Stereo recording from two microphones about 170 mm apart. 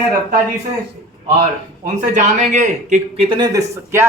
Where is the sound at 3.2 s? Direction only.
25° right (ahead or behind).